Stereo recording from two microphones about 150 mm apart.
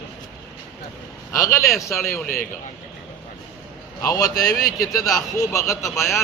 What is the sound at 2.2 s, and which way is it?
Speech, 70° left (ahead or behind).